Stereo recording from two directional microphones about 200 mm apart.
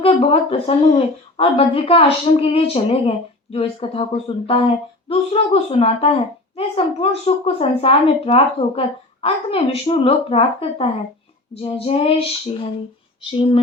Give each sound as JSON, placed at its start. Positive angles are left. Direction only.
{"t": 0.0, "sound": "speech", "side_deg": 30}